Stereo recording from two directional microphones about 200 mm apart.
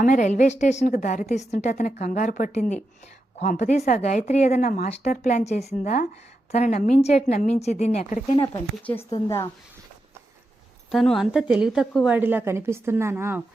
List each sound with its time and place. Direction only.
0.0 s a woman's voice: 40° left (ahead or behind)
8.4 s speech: 10° left (ahead or behind)
10.9 s a woman's voice: centre (ahead or behind)